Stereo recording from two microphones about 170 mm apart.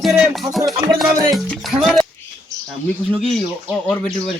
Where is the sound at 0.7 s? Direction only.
20° right (ahead or behind).